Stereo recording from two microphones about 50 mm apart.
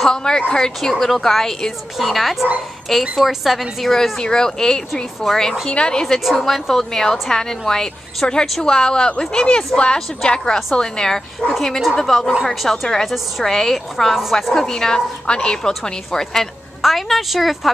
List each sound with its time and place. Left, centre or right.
0.0 s a woman's voice: centre
11.5 s a woman's voice: centre
16.8 s a woman's voice: centre